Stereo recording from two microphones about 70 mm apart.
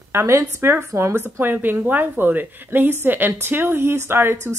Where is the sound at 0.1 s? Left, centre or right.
Right.